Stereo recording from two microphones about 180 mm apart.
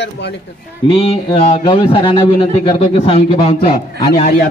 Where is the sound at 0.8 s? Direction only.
30° left (ahead or behind).